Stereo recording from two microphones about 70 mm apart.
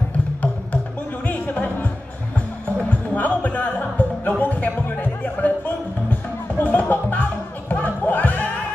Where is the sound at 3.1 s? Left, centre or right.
Left.